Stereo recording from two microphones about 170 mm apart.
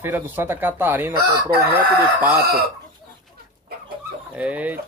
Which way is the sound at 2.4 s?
65° right (ahead or behind).